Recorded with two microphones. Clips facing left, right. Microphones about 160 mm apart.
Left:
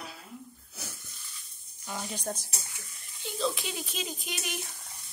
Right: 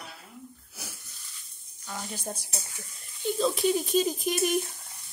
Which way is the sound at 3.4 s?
40° right (ahead or behind).